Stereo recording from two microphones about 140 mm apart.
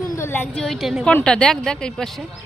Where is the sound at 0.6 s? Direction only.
Centre (ahead or behind).